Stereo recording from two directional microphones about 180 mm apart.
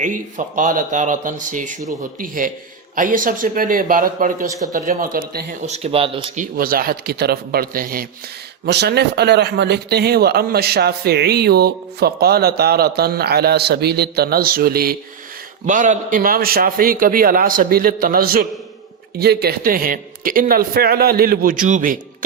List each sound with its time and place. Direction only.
0.0 s a man's voice: 45° right (ahead or behind)
5.6 s speech: 35° right (ahead or behind)
6.3 s speech: 50° right (ahead or behind)
8.6 s speech: 70° right (ahead or behind)
15.6 s a man's voice: 45° right (ahead or behind)